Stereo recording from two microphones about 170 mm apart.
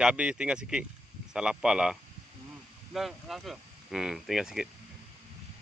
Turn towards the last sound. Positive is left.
turn(degrees=-5)  # may be behind; listen again after turning